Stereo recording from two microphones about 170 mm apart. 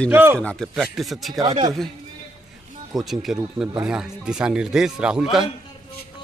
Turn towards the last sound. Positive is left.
turn(degrees=0)  # may be behind; listen again after turning